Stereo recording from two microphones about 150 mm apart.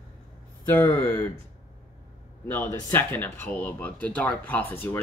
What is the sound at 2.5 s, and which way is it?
Speech, 15° left (ahead or behind).